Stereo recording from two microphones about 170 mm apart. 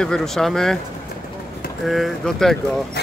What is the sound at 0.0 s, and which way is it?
Speech, 5° left (ahead or behind).